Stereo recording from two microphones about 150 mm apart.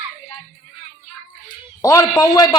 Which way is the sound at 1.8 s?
20° left (ahead or behind).